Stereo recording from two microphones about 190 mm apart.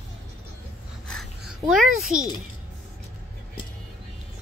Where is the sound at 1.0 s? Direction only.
Centre (ahead or behind).